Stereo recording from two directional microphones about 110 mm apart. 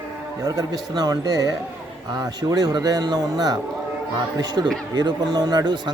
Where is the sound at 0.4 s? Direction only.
35° right (ahead or behind).